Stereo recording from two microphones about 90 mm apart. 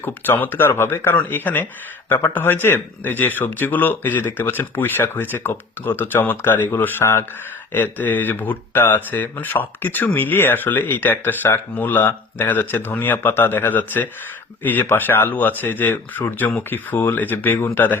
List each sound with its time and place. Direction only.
0.0 s speech: 20° left (ahead or behind)